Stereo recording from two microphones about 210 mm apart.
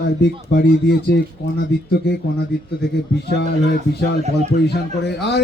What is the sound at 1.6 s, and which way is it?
Speech, 50° left (ahead or behind).